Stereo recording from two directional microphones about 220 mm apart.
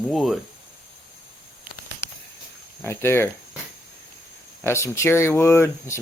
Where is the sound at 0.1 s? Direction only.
Centre (ahead or behind).